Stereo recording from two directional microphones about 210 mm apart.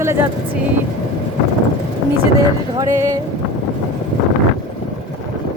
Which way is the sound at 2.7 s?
15° right (ahead or behind).